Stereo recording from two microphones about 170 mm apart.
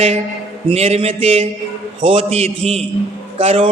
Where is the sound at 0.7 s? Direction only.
35° right (ahead or behind).